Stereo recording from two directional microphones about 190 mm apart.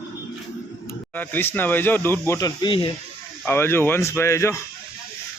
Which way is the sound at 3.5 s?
10° left (ahead or behind).